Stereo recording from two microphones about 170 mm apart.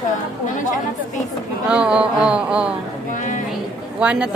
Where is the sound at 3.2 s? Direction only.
50° left (ahead or behind).